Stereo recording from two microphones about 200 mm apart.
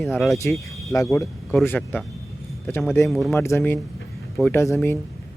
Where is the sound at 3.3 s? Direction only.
15° left (ahead or behind).